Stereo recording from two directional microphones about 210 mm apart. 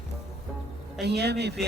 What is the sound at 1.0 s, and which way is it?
Speech, 50° right (ahead or behind).